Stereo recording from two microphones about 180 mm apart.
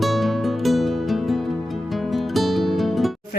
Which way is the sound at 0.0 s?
Centre (ahead or behind).